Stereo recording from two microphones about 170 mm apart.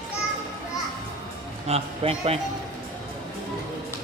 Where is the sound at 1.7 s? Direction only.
35° right (ahead or behind).